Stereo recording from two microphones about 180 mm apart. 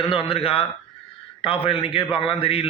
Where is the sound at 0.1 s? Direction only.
30° left (ahead or behind).